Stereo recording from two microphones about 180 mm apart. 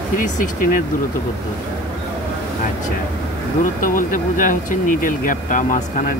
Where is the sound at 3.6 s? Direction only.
50° left (ahead or behind).